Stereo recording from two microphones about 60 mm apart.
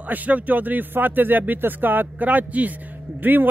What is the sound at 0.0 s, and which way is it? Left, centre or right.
Speech, right.